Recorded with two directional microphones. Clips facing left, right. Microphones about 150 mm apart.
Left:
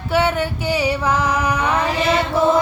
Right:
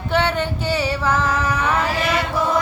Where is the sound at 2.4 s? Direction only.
25° left (ahead or behind).